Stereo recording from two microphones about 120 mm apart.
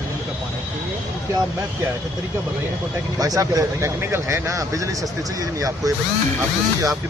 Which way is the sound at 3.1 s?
30° right (ahead or behind).